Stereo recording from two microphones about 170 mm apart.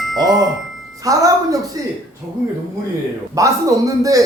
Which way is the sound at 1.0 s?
20° right (ahead or behind).